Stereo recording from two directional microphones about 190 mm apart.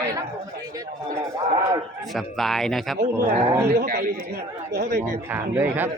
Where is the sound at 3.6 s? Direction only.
55° right (ahead or behind).